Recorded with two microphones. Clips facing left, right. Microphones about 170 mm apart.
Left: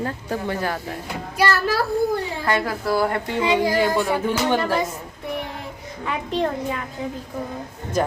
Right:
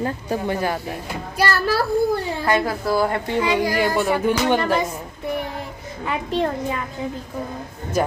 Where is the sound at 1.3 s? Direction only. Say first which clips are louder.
Even; 35° right (ahead or behind).